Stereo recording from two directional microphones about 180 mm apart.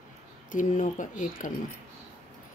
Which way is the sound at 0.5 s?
45° left (ahead or behind).